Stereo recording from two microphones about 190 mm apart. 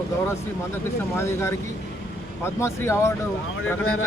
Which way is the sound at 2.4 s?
15° left (ahead or behind).